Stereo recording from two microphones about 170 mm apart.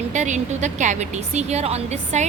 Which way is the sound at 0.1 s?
45° right (ahead or behind).